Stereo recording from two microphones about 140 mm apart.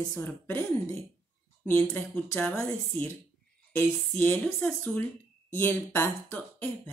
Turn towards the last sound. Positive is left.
turn(degrees=15)  # may be behind; listen again after turning